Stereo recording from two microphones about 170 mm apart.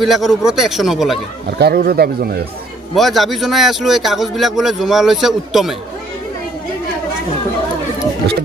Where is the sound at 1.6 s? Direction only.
65° right (ahead or behind).